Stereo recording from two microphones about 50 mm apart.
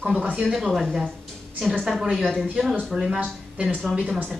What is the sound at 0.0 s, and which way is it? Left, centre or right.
Speech, right.